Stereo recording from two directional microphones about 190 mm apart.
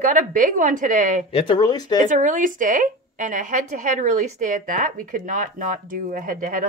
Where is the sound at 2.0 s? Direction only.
45° right (ahead or behind).